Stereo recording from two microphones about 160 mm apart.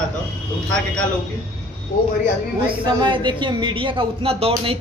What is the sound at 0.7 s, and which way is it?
Speech, 5° left (ahead or behind).